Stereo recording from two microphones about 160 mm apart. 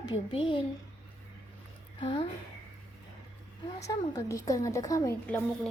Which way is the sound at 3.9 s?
20° left (ahead or behind).